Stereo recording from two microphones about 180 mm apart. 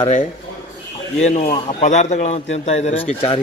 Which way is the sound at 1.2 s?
40° left (ahead or behind).